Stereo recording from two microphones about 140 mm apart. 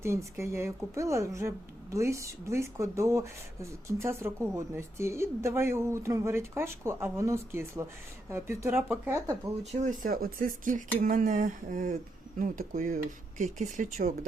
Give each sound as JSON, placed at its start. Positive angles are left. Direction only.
{"t": 0.0, "sound": "a woman's voice", "side_deg": -20}
{"t": 9.7, "sound": "speech", "side_deg": -70}